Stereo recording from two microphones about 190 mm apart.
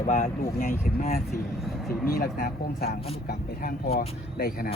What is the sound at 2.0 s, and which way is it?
Speech, 50° left (ahead or behind).